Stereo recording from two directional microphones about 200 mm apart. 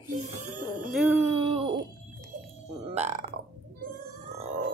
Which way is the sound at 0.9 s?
5° right (ahead or behind).